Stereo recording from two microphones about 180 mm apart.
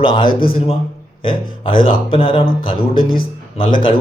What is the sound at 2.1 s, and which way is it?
Speech, 30° left (ahead or behind).